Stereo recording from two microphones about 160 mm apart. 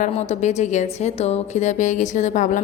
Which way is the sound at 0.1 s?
45° left (ahead or behind).